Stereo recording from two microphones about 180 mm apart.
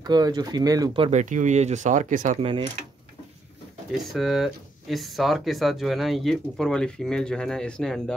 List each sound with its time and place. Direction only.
0.0 s speech: 20° right (ahead or behind)
1.1 s speech: 45° right (ahead or behind)
3.9 s speech: centre (ahead or behind)